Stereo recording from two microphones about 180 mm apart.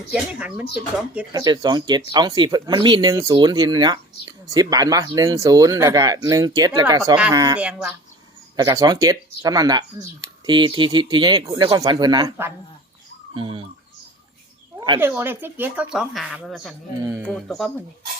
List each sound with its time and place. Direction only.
0.1 s speech: 5° right (ahead or behind)
1.3 s speech: 20° right (ahead or behind)
7.5 s speech: 5° right (ahead or behind)
8.5 s speech: 20° right (ahead or behind)
13.3 s speech: 30° right (ahead or behind)
14.9 s speech: 10° right (ahead or behind)